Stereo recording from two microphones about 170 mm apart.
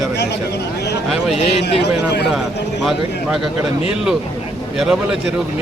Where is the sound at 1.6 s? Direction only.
90° left.